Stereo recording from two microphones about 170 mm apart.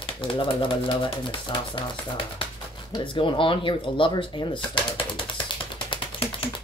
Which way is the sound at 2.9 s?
30° left (ahead or behind).